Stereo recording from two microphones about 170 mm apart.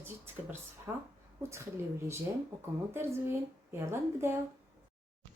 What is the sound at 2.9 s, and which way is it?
Speech, 15° right (ahead or behind).